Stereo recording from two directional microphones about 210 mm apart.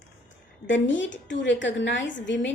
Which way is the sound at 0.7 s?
60° left (ahead or behind).